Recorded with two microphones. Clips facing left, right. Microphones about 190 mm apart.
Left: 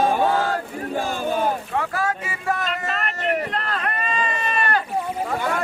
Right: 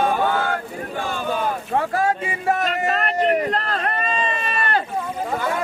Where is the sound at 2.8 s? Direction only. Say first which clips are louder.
Right 6 dB; 40° right (ahead or behind).